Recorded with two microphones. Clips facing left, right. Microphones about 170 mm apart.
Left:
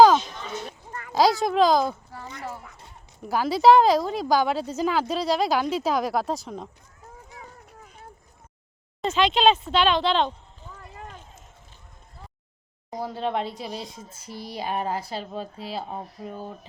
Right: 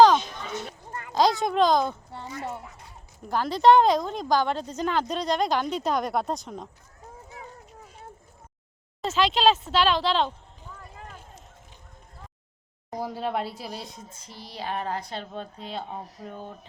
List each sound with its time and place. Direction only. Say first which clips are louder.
1.1 s a woman's voice: left 2 dB; 5° left (ahead or behind)
2.1 s speech: right 2 dB; 25° right (ahead or behind)
3.2 s a woman's voice: left 2 dB; 5° left (ahead or behind)
9.0 s a woman's voice: left 2 dB; centre (ahead or behind)
10.9 s a sound: left 2 dB; 5° right (ahead or behind)
13.0 s a woman's voice: left 2 dB; 10° right (ahead or behind); by 16.5 s 5° left (ahead or behind)